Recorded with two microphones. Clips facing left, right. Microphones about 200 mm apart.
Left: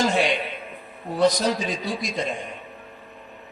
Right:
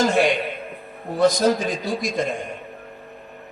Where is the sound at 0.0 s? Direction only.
50° right (ahead or behind).